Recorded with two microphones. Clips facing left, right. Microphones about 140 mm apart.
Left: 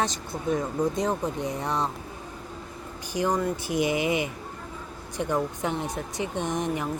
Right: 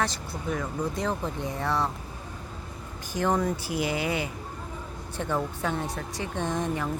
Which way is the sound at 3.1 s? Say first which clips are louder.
Even; 20° left (ahead or behind).